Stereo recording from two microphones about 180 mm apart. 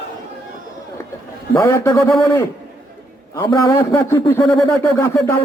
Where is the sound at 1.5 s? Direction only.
15° left (ahead or behind).